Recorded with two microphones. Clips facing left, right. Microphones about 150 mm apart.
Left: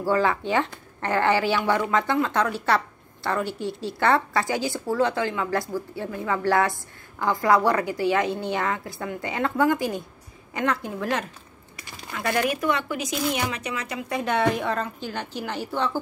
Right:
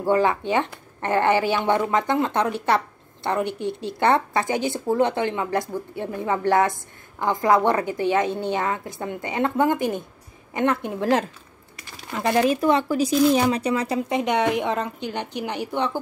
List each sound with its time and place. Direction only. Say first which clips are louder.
0.0 s a woman's voice: right 2 dB; 20° right (ahead or behind)